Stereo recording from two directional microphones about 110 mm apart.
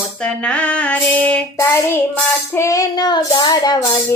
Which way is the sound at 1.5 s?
25° left (ahead or behind).